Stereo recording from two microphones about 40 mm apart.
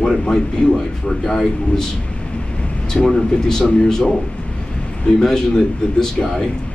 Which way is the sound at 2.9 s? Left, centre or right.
Centre.